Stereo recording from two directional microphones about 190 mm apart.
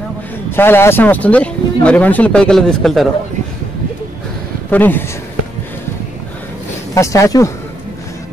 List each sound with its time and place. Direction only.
0.5 s speech: 10° left (ahead or behind)
4.6 s speech: 10° left (ahead or behind)
6.9 s speech: 15° left (ahead or behind)